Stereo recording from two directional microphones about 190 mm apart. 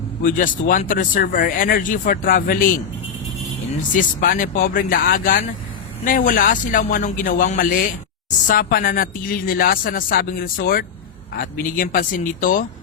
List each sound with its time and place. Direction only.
0.2 s speech: 45° left (ahead or behind)
3.9 s speech: 45° left (ahead or behind)